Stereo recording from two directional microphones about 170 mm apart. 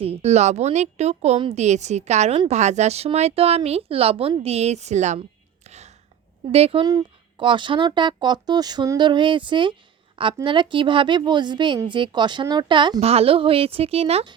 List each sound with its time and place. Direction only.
0.0 s speech: 35° right (ahead or behind)
5.6 s whispering: 40° right (ahead or behind)
6.5 s a woman's voice: 35° right (ahead or behind)